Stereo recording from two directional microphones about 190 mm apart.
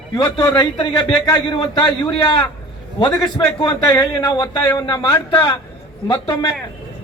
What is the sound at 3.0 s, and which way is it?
A man's voice, 20° left (ahead or behind).